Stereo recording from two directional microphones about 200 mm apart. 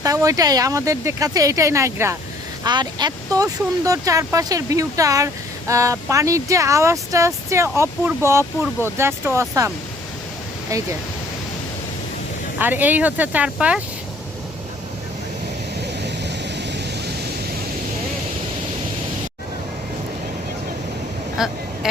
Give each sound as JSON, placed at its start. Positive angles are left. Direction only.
{"t": 0.0, "sound": "speech", "side_deg": -15}
{"t": 12.5, "sound": "speech", "side_deg": -10}
{"t": 15.9, "sound": "a sound", "side_deg": -60}
{"t": 21.4, "sound": "speech", "side_deg": 0}